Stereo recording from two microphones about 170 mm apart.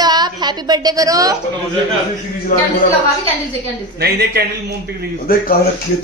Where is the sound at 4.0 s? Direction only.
70° right (ahead or behind).